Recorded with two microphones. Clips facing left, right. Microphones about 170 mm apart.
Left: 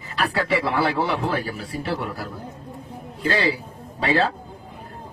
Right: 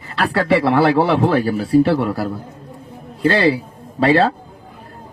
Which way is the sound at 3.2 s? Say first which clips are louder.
Right 8 dB; 60° right (ahead or behind).